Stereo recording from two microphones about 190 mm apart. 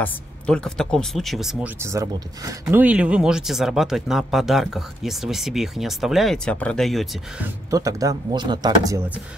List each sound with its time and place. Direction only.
0.0 s speech: 5° left (ahead or behind)
1.8 s speech: 15° right (ahead or behind); by 7.1 s centre (ahead or behind)
7.4 s speech: 15° right (ahead or behind)